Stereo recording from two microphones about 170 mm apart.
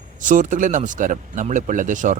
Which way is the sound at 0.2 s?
50° right (ahead or behind).